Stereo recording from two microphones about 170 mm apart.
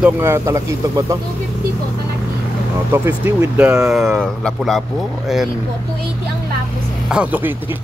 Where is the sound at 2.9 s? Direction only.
15° right (ahead or behind); by 4.8 s 5° left (ahead or behind).